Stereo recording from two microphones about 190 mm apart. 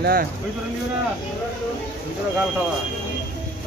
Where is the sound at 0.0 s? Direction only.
50° right (ahead or behind).